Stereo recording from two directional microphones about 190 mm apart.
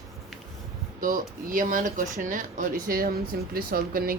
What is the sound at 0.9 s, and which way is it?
Speech, 45° right (ahead or behind).